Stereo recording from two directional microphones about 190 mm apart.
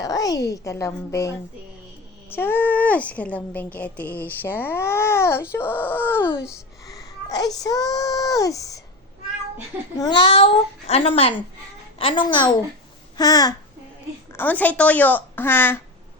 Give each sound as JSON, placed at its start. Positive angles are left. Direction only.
{"t": 0.0, "sound": "a woman's voice", "side_deg": 20}
{"t": 2.3, "sound": "a woman's voice", "side_deg": 10}
{"t": 10.0, "sound": "a child's voice", "side_deg": 25}
{"t": 14.3, "sound": "a woman's voice", "side_deg": 10}